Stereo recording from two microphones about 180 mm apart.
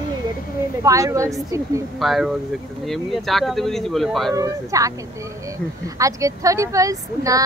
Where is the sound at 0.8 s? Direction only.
20° right (ahead or behind).